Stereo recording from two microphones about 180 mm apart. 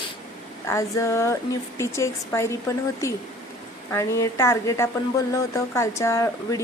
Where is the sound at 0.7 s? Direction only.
15° left (ahead or behind).